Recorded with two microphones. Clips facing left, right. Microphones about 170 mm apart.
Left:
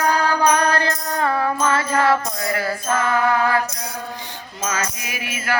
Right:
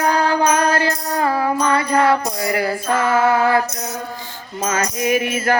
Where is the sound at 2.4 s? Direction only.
20° right (ahead or behind).